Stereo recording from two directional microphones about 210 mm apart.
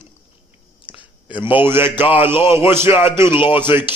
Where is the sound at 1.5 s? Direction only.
10° right (ahead or behind).